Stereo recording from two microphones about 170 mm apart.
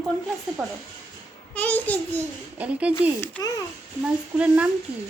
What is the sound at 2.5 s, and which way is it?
Speech, 10° right (ahead or behind).